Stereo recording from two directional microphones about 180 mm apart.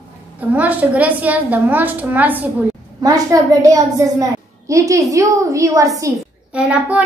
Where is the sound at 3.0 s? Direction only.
20° right (ahead or behind).